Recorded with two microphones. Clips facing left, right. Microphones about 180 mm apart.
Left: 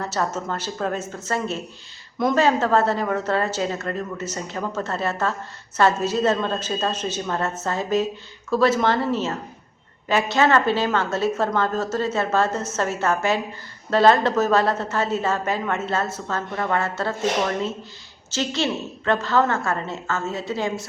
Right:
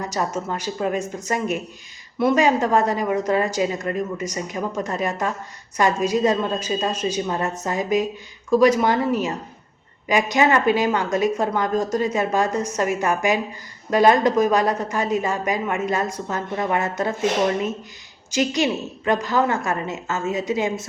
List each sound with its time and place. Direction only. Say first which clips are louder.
0.0 s a woman's voice: even; 10° right (ahead or behind)